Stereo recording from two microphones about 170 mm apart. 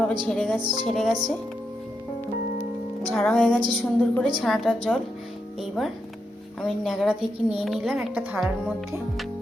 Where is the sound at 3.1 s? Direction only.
5° left (ahead or behind).